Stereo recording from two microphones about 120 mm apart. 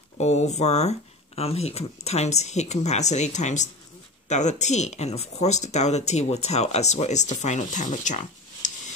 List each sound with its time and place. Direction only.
0.2 s speech: 70° left (ahead or behind); by 8.7 s 90° left